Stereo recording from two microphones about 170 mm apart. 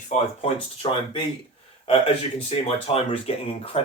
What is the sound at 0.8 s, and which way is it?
Speech, 30° left (ahead or behind).